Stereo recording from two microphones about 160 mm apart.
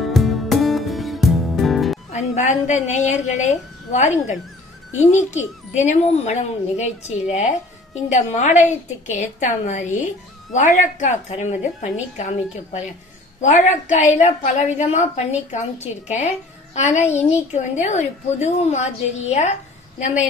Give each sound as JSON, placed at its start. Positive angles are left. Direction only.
{"t": 0.0, "sound": "music", "side_deg": 0}
{"t": 2.1, "sound": "a woman's voice", "side_deg": 50}